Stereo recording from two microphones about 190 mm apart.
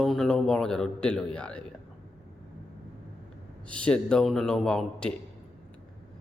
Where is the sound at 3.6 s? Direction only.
5° left (ahead or behind).